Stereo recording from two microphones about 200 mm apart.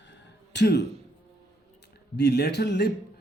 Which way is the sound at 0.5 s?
55° left (ahead or behind).